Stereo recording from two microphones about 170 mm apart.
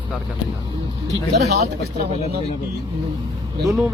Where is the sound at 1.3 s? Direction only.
70° right (ahead or behind).